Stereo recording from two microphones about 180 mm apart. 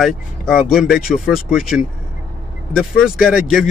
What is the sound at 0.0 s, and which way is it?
Speech, centre (ahead or behind).